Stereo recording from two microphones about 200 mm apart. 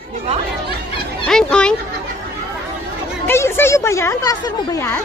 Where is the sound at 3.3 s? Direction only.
10° left (ahead or behind).